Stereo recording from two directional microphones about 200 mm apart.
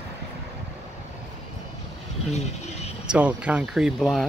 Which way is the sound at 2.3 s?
35° left (ahead or behind).